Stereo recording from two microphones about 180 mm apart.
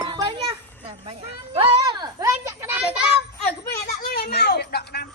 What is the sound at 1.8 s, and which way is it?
Children playing, 20° right (ahead or behind).